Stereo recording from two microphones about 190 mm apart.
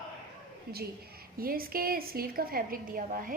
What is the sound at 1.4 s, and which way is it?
A woman's voice, 50° right (ahead or behind).